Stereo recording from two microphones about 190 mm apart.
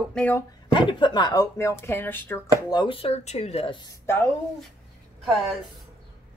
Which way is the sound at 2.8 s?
30° left (ahead or behind).